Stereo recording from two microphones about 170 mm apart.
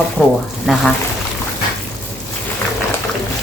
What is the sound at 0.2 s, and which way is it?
Speech, 5° right (ahead or behind).